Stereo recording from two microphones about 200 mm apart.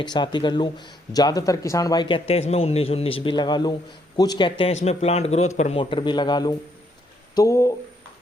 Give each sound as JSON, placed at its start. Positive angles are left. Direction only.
{"t": 0.0, "sound": "speech", "side_deg": 20}